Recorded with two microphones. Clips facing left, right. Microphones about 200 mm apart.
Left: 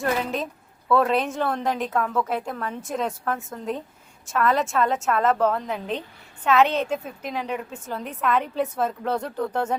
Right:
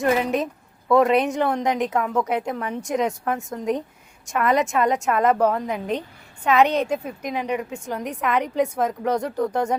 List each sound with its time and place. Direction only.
0.0 s a woman's voice: 10° right (ahead or behind)